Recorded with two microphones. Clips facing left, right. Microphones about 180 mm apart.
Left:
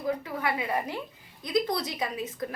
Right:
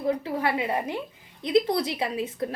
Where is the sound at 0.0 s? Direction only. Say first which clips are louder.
Right 4 dB; 30° right (ahead or behind).